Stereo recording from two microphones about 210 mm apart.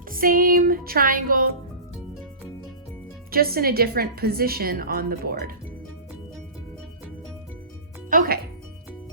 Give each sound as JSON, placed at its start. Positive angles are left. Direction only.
{"t": 0.1, "sound": "a woman's voice", "side_deg": -40}
{"t": 3.3, "sound": "a woman's voice", "side_deg": -45}
{"t": 8.1, "sound": "speech", "side_deg": -40}